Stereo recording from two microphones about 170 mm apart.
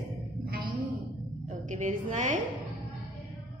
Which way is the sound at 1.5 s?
45° right (ahead or behind).